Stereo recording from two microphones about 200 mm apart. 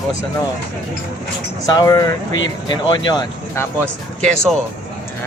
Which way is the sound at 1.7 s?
20° left (ahead or behind).